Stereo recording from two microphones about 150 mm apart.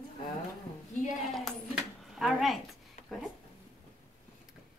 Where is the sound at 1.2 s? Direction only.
Centre (ahead or behind).